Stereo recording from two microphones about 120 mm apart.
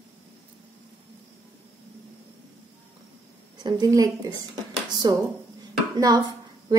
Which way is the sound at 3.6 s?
35° right (ahead or behind).